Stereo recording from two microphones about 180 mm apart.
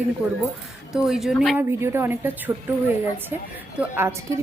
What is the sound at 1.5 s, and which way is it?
Speech, 15° right (ahead or behind).